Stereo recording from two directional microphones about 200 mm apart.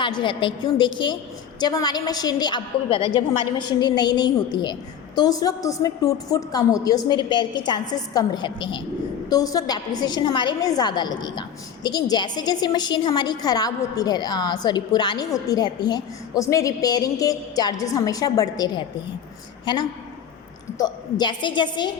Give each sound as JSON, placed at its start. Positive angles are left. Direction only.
{"t": 0.0, "sound": "a woman's voice", "side_deg": 25}
{"t": 20.7, "sound": "a woman's voice", "side_deg": 20}